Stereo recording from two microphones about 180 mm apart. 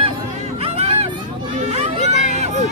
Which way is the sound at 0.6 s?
35° right (ahead or behind).